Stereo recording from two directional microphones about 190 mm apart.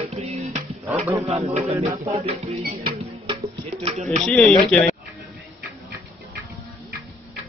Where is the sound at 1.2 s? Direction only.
35° right (ahead or behind).